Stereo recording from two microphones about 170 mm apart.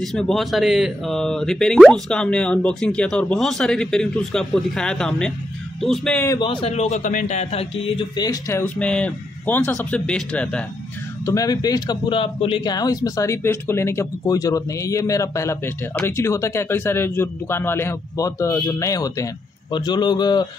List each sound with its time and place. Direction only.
0.0 s speech: centre (ahead or behind)
6.4 s a man's voice: 30° left (ahead or behind)
8.2 s speech: 20° left (ahead or behind)
11.2 s a man's voice: 20° left (ahead or behind)